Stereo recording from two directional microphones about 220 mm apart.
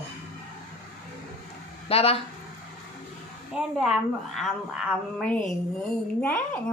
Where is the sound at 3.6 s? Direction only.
Centre (ahead or behind).